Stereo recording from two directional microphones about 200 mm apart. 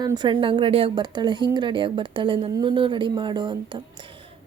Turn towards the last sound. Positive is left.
turn(degrees=-20)  # may be behind; listen again after turning